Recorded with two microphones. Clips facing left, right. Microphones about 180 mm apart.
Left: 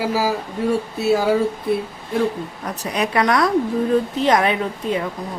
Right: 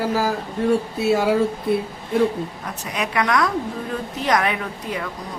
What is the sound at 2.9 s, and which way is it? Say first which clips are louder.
A woman's voice: left 3 dB; 35° left (ahead or behind).